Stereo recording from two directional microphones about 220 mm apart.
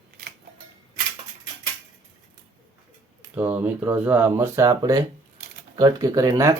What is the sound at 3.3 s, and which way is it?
Speech, 10° right (ahead or behind).